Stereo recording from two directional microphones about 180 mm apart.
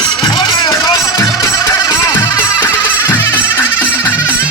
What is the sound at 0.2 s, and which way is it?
Music, 20° left (ahead or behind).